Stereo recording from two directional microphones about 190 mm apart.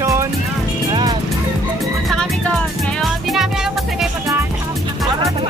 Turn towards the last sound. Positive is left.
turn(degrees=0)  # may be behind; listen again after turning